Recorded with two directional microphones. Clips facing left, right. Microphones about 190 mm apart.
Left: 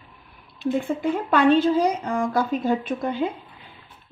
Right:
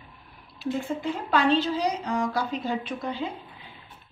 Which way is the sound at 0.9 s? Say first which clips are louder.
Left 4 dB; 55° left (ahead or behind).